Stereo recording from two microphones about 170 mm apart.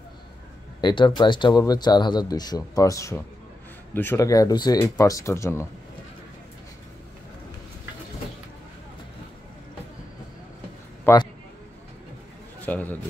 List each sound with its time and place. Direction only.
0.7 s speech: 25° left (ahead or behind)
11.1 s a man's voice: 15° left (ahead or behind)
12.6 s a man's voice: 10° left (ahead or behind)